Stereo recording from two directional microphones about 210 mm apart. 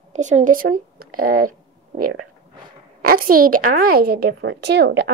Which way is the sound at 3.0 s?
45° right (ahead or behind).